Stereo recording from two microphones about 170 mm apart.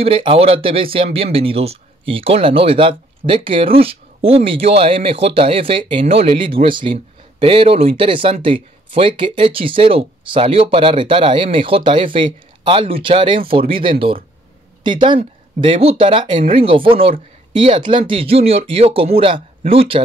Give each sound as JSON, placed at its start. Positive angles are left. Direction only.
{"t": 0.0, "sound": "speech", "side_deg": -30}